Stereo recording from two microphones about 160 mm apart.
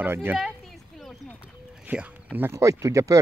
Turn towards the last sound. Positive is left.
turn(degrees=-20)  # may be behind; listen again after turning